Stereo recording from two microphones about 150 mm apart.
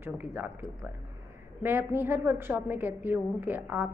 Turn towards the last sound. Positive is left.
turn(degrees=-10)  # may be behind; listen again after turning